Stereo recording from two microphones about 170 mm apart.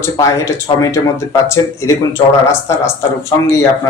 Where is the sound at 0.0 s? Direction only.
20° left (ahead or behind).